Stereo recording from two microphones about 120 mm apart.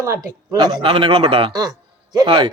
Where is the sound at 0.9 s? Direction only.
50° right (ahead or behind).